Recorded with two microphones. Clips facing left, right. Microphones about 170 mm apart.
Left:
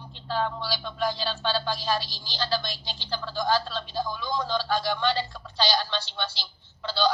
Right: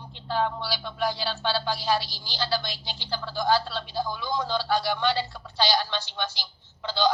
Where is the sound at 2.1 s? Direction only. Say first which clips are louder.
Right 1 dB; 20° left (ahead or behind).